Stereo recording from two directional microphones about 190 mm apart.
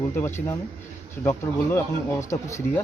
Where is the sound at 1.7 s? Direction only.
15° left (ahead or behind).